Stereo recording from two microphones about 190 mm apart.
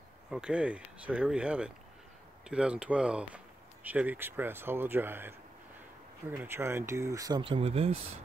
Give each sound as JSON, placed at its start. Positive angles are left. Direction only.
{"t": 0.3, "sound": "speech", "side_deg": -5}